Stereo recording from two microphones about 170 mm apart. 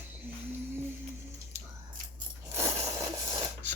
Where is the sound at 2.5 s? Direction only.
15° right (ahead or behind).